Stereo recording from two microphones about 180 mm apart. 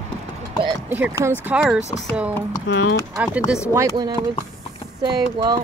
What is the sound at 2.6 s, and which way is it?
Speech, 75° left (ahead or behind).